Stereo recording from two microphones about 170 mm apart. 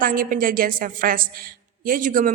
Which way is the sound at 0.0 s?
55° right (ahead or behind).